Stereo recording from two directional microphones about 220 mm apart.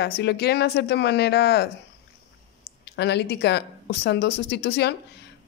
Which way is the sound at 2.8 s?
50° left (ahead or behind).